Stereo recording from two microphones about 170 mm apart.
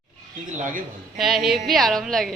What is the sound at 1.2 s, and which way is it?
A woman's voice, centre (ahead or behind).